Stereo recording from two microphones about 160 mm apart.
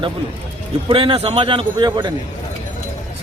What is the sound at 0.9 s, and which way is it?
Speech, 35° right (ahead or behind).